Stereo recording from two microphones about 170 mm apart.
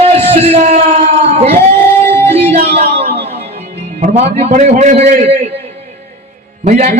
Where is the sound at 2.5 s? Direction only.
35° right (ahead or behind).